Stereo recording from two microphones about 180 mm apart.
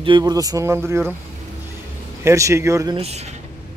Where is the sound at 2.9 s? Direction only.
35° right (ahead or behind).